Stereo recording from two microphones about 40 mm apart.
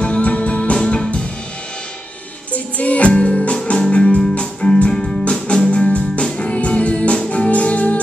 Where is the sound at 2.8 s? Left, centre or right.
Left.